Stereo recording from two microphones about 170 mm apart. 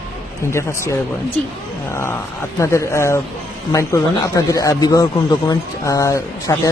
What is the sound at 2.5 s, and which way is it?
Speech, 15° left (ahead or behind).